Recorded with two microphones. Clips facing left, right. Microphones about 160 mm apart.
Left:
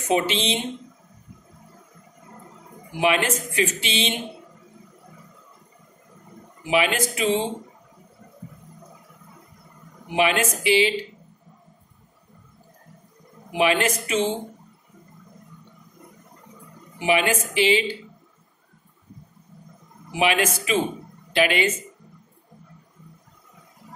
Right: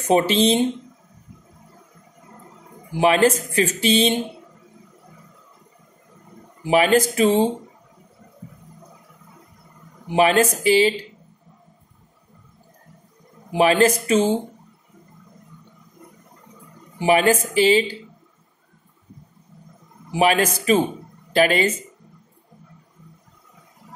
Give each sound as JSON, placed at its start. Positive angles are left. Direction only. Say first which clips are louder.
{"t": 0.1, "sound": "speech", "louder": "right 6 dB", "side_deg": -40}
{"t": 3.0, "sound": "speech", "louder": "right 5 dB", "side_deg": -35}
{"t": 6.6, "sound": "speech", "louder": "right 6 dB", "side_deg": -40}
{"t": 10.1, "sound": "speech", "louder": "right 5 dB", "side_deg": -35}
{"t": 13.5, "sound": "speech", "louder": "right 5 dB", "side_deg": -35}
{"t": 17.0, "sound": "speech", "louder": "right 5 dB", "side_deg": -40}
{"t": 20.1, "sound": "a man's voice", "louder": "right 4 dB", "side_deg": -40}